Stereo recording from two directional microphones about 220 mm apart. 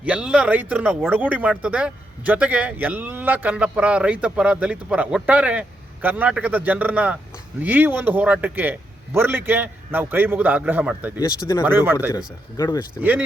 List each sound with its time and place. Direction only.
0.0 s speech: 5° right (ahead or behind)
11.2 s speech: 15° left (ahead or behind)
11.6 s speech: 10° right (ahead or behind)
12.1 s speech: 15° left (ahead or behind)
13.0 s speech: 5° right (ahead or behind)